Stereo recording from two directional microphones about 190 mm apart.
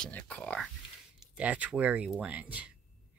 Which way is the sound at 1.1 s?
5° right (ahead or behind).